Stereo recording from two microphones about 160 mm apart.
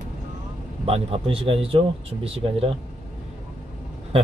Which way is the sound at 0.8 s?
40° right (ahead or behind).